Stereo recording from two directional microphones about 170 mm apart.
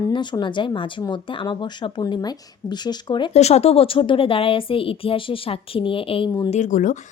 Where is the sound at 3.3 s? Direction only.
40° left (ahead or behind).